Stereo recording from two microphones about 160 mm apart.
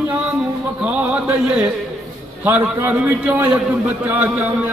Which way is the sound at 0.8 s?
5° right (ahead or behind).